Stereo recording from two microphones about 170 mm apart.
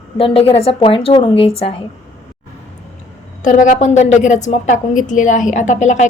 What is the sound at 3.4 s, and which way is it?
A woman's voice, 45° left (ahead or behind).